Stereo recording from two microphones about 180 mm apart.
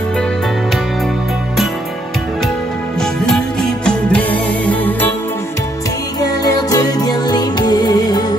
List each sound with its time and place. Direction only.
3.3 s music: 5° left (ahead or behind)
6.2 s music: 20° left (ahead or behind)